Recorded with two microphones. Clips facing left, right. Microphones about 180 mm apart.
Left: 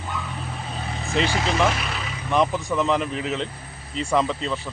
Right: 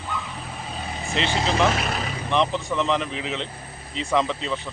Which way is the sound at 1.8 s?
45° right (ahead or behind).